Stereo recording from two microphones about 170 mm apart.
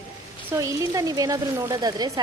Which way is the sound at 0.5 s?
20° right (ahead or behind).